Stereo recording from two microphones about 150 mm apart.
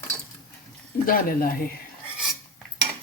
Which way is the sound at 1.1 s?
75° left (ahead or behind).